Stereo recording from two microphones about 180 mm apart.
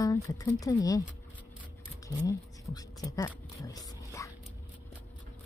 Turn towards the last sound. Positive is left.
turn(degrees=20)  # may be behind; listen again after turning